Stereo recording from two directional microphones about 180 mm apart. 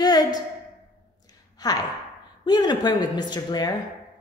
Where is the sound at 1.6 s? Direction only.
20° left (ahead or behind).